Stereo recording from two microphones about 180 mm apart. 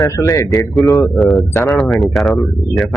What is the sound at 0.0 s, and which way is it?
Speech, 20° left (ahead or behind).